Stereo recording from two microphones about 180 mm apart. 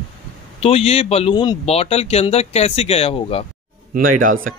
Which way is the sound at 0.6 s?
35° left (ahead or behind).